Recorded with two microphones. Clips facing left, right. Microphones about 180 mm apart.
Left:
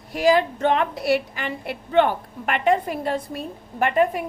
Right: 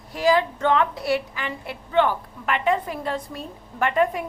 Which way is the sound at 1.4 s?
55° left (ahead or behind).